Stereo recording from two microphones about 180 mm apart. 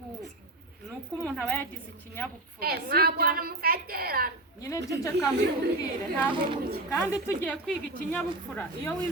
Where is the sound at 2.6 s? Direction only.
60° right (ahead or behind).